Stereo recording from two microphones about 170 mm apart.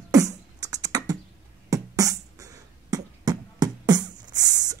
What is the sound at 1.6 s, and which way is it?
Music, 20° right (ahead or behind).